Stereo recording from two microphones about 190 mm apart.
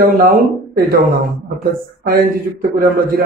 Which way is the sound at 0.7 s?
55° right (ahead or behind).